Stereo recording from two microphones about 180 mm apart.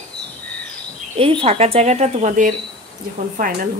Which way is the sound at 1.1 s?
30° right (ahead or behind).